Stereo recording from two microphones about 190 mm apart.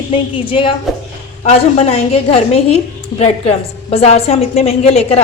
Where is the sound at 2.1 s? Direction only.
30° left (ahead or behind).